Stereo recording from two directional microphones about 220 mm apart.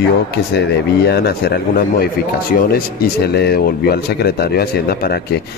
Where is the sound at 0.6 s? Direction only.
45° left (ahead or behind).